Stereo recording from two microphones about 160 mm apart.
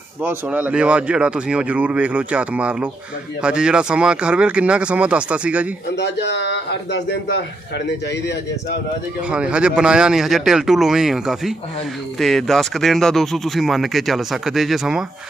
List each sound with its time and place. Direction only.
0.2 s speech: 10° right (ahead or behind)
6.0 s a man's voice: 90° left
9.3 s speech: 5° right (ahead or behind)